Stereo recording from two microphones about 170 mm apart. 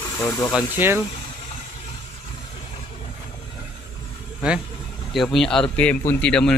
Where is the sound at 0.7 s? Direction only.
15° right (ahead or behind).